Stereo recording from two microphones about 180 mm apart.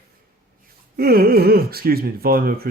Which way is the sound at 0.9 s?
55° right (ahead or behind).